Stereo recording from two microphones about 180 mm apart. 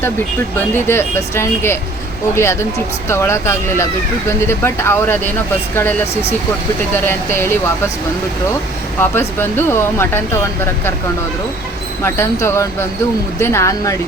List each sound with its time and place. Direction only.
0.9 s speech: 15° left (ahead or behind)
6.9 s speech: 10° left (ahead or behind)
9.0 s speech: 10° left (ahead or behind)
12.0 s speech: 15° left (ahead or behind)